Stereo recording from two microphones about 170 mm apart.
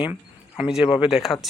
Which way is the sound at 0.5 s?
5° right (ahead or behind).